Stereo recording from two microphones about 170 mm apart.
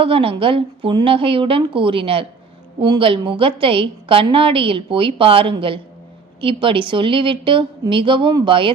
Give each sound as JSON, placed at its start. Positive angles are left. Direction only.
{"t": 0.0, "sound": "a woman's voice", "side_deg": -35}